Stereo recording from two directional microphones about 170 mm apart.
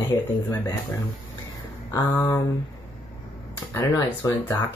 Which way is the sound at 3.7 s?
15° left (ahead or behind).